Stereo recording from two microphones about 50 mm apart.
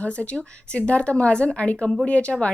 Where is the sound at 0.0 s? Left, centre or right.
Left.